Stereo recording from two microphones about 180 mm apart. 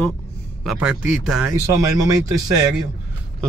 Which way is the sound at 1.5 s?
20° right (ahead or behind).